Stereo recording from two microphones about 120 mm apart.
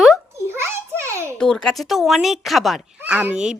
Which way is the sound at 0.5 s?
20° right (ahead or behind).